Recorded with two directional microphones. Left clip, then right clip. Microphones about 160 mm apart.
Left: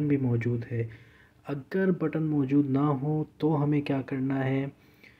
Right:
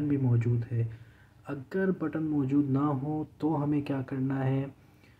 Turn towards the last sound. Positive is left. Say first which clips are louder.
# left 3 dB
turn(degrees=15)  # may be behind; listen again after turning